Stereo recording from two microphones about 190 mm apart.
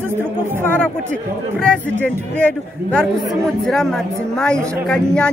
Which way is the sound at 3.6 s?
5° left (ahead or behind).